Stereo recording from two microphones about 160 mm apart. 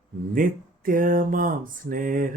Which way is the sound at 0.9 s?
60° right (ahead or behind).